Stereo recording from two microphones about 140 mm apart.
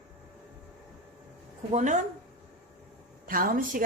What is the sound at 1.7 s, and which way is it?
Speech, 60° right (ahead or behind).